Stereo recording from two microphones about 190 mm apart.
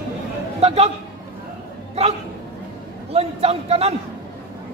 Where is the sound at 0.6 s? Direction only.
35° right (ahead or behind).